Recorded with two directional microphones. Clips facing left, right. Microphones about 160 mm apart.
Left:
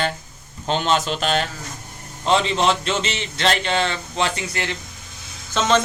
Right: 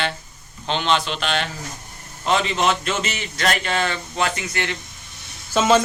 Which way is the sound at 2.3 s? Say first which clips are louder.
Left 2 dB; 30° left (ahead or behind).